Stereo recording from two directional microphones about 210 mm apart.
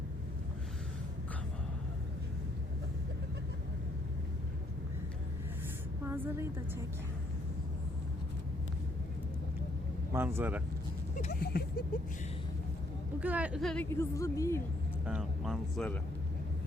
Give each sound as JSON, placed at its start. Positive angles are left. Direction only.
{"t": 6.1, "sound": "a sound", "side_deg": -10}
{"t": 10.1, "sound": "speech", "side_deg": -10}
{"t": 11.2, "sound": "a sound", "side_deg": 45}
{"t": 13.1, "sound": "speech", "side_deg": -5}
{"t": 13.9, "sound": "speech", "side_deg": 15}
{"t": 15.0, "sound": "speech", "side_deg": -5}